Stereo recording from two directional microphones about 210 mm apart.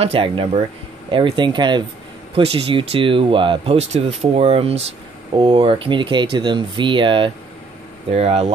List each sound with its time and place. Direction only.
0.0 s speech: 25° right (ahead or behind)